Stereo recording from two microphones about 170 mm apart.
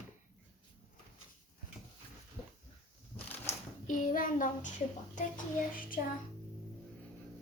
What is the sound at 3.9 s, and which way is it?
Child singing, 50° left (ahead or behind).